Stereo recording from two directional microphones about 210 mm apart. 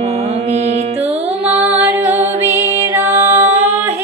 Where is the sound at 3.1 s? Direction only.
30° right (ahead or behind).